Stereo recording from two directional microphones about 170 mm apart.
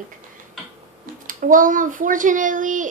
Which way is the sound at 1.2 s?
50° right (ahead or behind).